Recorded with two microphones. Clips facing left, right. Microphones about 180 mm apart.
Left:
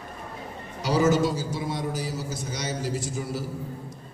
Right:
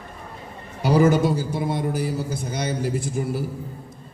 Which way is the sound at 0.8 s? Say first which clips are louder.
Right 4 dB; 55° right (ahead or behind).